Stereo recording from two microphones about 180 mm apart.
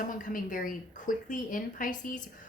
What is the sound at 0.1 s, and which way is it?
Speech, 50° left (ahead or behind).